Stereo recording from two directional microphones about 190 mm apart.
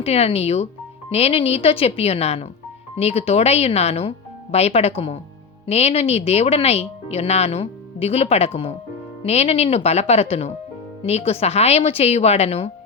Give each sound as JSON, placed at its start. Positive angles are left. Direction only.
{"t": 0.0, "sound": "speech", "side_deg": 30}